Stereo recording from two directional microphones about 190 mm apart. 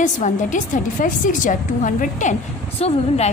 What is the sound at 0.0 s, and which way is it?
A woman's voice, 40° left (ahead or behind).